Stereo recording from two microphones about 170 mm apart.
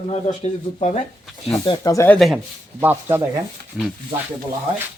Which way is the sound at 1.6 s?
20° left (ahead or behind).